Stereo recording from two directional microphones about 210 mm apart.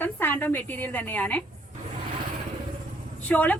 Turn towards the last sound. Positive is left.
turn(degrees=5)  # may be behind; listen again after turning